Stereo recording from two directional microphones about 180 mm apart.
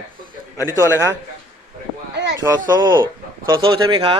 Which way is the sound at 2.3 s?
20° right (ahead or behind).